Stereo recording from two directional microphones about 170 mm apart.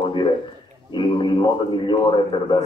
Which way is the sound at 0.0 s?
30° left (ahead or behind).